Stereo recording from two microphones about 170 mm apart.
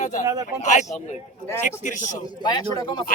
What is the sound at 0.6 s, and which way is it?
Speech, 45° left (ahead or behind).